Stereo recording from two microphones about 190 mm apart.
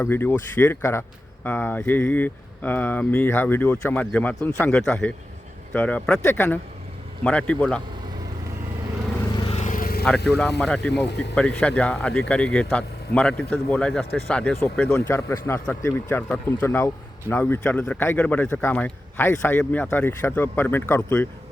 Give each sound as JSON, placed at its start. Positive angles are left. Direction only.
{"t": 0.0, "sound": "speech", "side_deg": 10}
{"t": 9.3, "sound": "vehicle", "side_deg": 30}
{"t": 10.2, "sound": "speech", "side_deg": 0}